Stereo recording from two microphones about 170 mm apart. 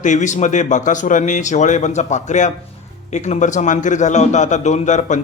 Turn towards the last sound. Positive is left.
turn(degrees=45)  # may be behind; listen again after turning